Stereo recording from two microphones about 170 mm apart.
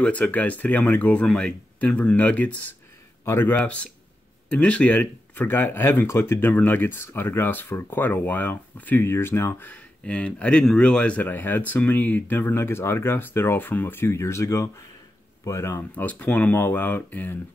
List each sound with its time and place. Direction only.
0.0 s speech: 5° left (ahead or behind)